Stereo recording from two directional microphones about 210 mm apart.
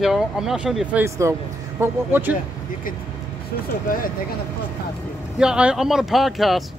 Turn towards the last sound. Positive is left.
turn(degrees=0)  # may be behind; listen again after turning